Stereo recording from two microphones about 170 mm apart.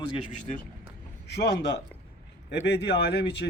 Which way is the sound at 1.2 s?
85° left.